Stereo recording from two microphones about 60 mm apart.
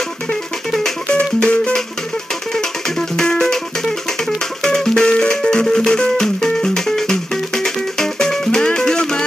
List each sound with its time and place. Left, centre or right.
0.3 s music: centre
1.1 s music: centre
4.6 s music: centre